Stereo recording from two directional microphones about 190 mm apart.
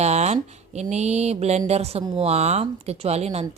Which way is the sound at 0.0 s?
35° right (ahead or behind).